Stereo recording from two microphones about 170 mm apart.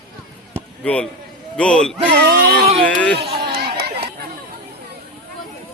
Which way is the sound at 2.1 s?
75° right (ahead or behind).